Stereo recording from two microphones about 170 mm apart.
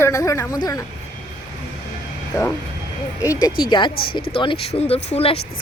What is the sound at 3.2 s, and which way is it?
Speech, 20° left (ahead or behind).